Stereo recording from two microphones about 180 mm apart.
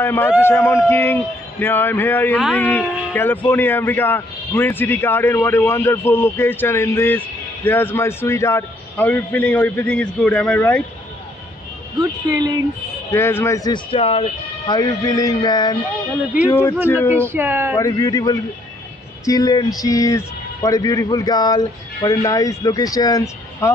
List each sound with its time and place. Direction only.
0.0 s speech: 15° left (ahead or behind)
2.3 s speech: centre (ahead or behind)
2.8 s speech: 10° left (ahead or behind)
12.0 s a woman's voice: 20° right (ahead or behind)
13.1 s speech: 15° left (ahead or behind)
13.8 s speech: 30° left (ahead or behind)
14.7 s speech: 20° left (ahead or behind)
17.2 s speech: 10° right (ahead or behind)
17.7 s speech: 20° left (ahead or behind)